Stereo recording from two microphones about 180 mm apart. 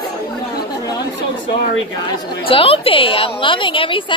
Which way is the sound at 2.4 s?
30° left (ahead or behind).